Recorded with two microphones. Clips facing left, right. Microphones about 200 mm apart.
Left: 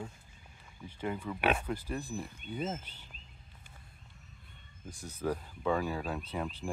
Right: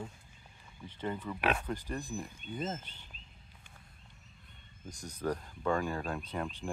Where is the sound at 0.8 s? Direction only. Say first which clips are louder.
Left 1 dB; 10° left (ahead or behind).